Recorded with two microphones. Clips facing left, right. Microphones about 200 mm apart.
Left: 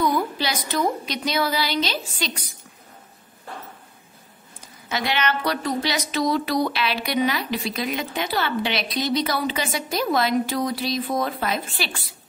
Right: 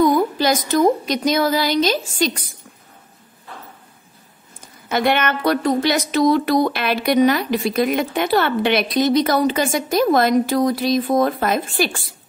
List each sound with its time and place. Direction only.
0.0 s a woman's voice: 45° right (ahead or behind)
4.8 s a woman's voice: 55° right (ahead or behind)